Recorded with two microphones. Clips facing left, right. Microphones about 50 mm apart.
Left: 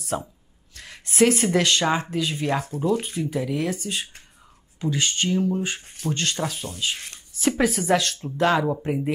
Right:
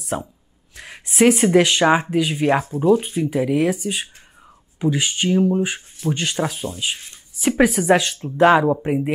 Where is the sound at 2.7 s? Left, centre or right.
Right.